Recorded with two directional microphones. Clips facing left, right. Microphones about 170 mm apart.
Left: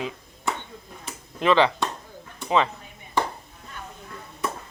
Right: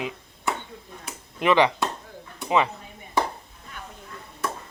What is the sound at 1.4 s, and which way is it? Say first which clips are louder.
Speech: even; 15° right (ahead or behind).